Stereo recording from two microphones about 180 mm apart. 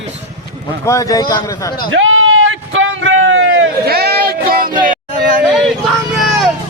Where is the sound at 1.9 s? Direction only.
90° right; by 5.0 s 50° right (ahead or behind).